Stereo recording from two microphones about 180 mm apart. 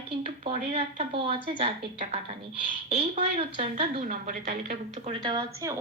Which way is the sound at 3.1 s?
35° right (ahead or behind).